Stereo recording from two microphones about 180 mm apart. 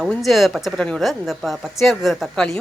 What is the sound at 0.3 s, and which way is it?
Speech, centre (ahead or behind).